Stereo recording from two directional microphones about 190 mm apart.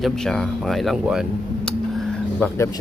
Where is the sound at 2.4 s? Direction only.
15° left (ahead or behind).